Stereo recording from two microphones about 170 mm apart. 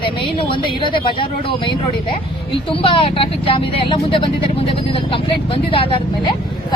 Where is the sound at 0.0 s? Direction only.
30° left (ahead or behind).